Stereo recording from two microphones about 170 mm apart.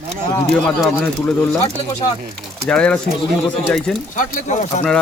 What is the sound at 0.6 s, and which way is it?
Speech, 5° left (ahead or behind).